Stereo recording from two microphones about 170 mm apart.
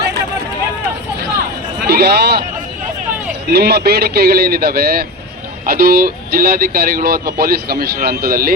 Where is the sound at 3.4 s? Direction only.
70° right (ahead or behind).